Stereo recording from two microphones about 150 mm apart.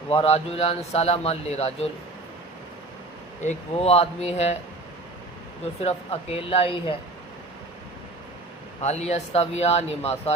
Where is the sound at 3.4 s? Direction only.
45° left (ahead or behind).